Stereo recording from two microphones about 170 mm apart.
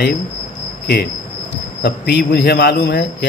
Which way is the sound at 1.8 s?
80° left.